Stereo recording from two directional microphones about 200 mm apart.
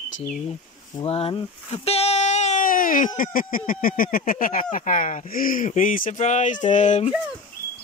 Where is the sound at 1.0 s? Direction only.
30° left (ahead or behind).